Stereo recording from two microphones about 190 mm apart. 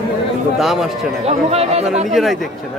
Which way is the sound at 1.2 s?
35° right (ahead or behind).